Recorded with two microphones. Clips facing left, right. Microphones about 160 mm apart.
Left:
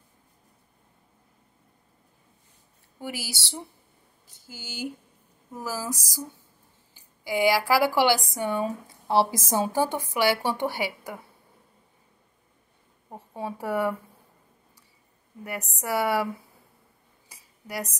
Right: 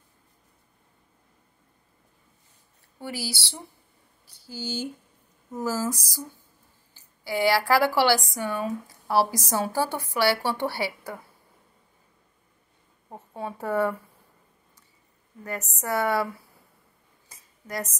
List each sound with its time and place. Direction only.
3.0 s a woman's voice: 15° left (ahead or behind)
13.3 s a woman's voice: 15° left (ahead or behind)
15.8 s a woman's voice: 10° left (ahead or behind)
17.3 s a sound: 10° left (ahead or behind)